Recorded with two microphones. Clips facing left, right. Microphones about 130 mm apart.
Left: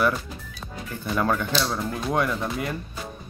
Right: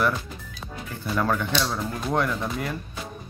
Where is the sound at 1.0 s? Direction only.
Centre (ahead or behind).